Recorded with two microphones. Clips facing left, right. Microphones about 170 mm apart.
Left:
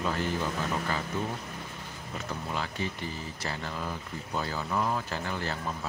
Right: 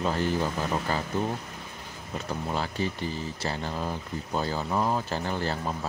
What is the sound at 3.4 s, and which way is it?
Speech, 30° right (ahead or behind).